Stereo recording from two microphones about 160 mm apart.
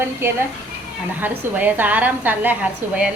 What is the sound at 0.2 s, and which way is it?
A woman's voice, 15° right (ahead or behind).